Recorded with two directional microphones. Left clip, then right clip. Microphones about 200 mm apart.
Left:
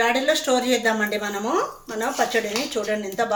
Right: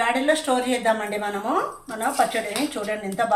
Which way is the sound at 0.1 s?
50° left (ahead or behind).